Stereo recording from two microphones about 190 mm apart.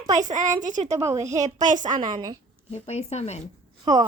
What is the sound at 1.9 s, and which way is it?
Speech, 20° right (ahead or behind).